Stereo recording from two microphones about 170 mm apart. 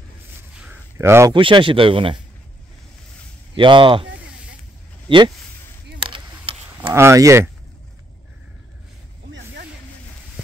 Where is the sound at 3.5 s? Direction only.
30° right (ahead or behind).